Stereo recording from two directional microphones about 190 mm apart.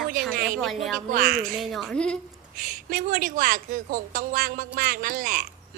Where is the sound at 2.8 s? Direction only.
50° right (ahead or behind).